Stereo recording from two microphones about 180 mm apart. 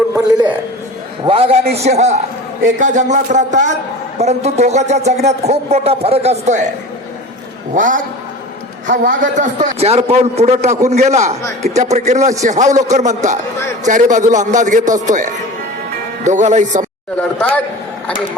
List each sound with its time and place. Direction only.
0.1 s a man's voice: 20° right (ahead or behind)
1.7 s a man's voice: 35° right (ahead or behind)
7.7 s a man's voice: 45° right (ahead or behind)
17.2 s speech: 10° left (ahead or behind)